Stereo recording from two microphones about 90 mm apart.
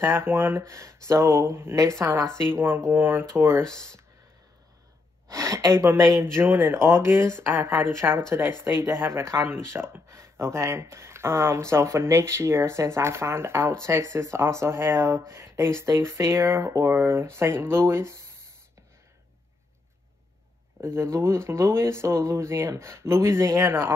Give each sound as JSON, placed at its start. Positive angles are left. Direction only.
{"t": 0.0, "sound": "speech", "side_deg": -25}
{"t": 3.6, "sound": "speech", "side_deg": 5}
{"t": 5.3, "sound": "speech", "side_deg": -35}
{"t": 20.8, "sound": "speech", "side_deg": -30}